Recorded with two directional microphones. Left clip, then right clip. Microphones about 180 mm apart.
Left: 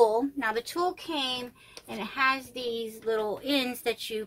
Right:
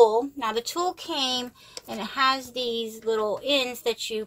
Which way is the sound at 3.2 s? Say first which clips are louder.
Right 5 dB; 10° left (ahead or behind).